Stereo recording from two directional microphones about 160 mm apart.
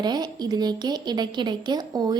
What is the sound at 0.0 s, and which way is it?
Speech, 25° right (ahead or behind).